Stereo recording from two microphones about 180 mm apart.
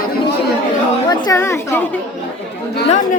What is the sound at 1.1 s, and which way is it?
Speech, 20° left (ahead or behind).